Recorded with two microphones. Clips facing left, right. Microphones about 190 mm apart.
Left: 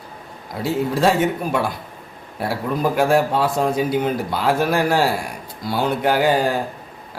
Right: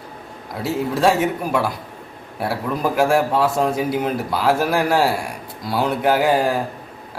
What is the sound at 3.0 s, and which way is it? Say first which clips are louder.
A man's voice: right 1 dB; 5° right (ahead or behind).